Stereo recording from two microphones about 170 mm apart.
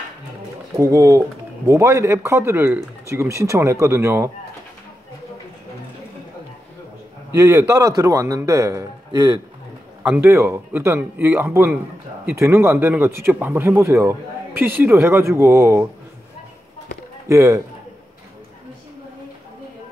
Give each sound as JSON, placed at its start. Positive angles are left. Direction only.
{"t": 0.7, "sound": "speech", "side_deg": -15}
{"t": 7.3, "sound": "a man's voice", "side_deg": -15}
{"t": 17.3, "sound": "speech", "side_deg": -15}